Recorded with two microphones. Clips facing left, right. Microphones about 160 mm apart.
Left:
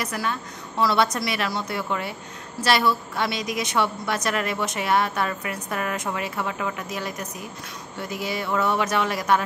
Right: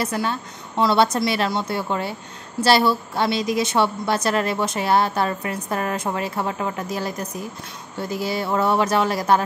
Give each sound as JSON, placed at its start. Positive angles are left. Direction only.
{"t": 0.0, "sound": "a woman's voice", "side_deg": -30}